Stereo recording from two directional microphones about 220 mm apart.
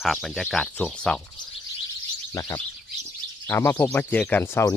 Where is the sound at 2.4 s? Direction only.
15° left (ahead or behind).